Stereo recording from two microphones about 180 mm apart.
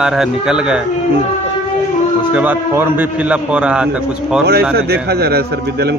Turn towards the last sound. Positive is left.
turn(degrees=-60)  # may be behind; listen again after turning